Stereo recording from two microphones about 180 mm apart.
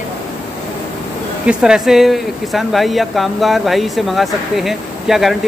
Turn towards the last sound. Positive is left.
turn(degrees=0)  # may be behind; listen again after turning